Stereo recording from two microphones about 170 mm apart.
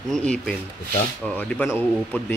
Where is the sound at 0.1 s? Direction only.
5° left (ahead or behind).